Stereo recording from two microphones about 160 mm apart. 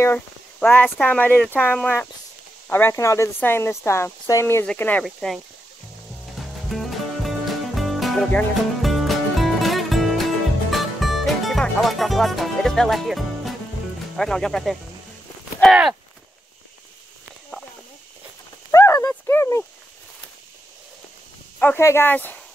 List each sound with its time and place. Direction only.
0.0 s speech: 10° left (ahead or behind)
6.3 s music: centre (ahead or behind)
14.1 s speech: 5° left (ahead or behind)
18.7 s clip-clop: 20° left (ahead or behind)
21.5 s speech: 15° left (ahead or behind)